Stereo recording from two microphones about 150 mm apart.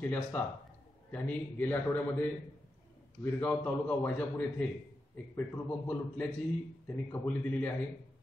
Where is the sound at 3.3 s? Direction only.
10° left (ahead or behind).